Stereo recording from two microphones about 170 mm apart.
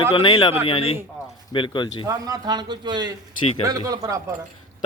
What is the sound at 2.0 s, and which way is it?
A man's voice, 20° right (ahead or behind).